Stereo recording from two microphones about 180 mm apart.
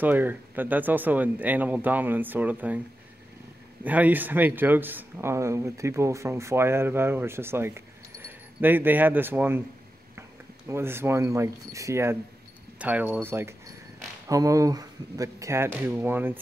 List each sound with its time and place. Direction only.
0.0 s speech: 10° right (ahead or behind)
3.8 s speech: 10° right (ahead or behind)
10.7 s speech: 15° right (ahead or behind)